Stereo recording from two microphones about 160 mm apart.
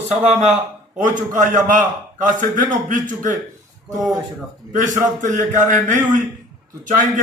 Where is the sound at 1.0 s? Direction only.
55° right (ahead or behind).